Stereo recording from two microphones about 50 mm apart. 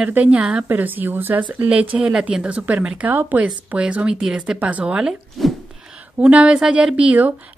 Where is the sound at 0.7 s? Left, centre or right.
Right.